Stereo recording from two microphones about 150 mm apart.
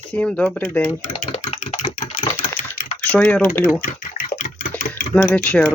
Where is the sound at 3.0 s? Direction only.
10° left (ahead or behind).